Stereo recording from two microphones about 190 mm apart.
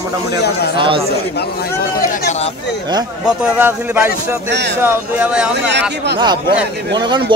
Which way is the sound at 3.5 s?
10° right (ahead or behind).